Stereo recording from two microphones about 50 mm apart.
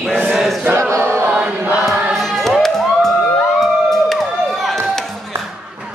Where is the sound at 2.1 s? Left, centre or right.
Centre.